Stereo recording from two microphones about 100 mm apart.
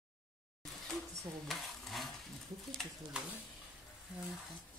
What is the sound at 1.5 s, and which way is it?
Stir, centre (ahead or behind).